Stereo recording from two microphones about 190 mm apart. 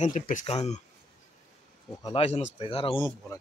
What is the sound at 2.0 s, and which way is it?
Speech, 30° left (ahead or behind).